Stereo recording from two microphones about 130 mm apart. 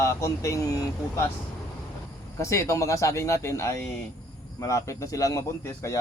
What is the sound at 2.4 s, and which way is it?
Speech, 20° left (ahead or behind).